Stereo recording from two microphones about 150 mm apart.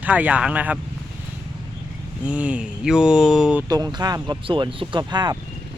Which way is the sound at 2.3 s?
10° right (ahead or behind).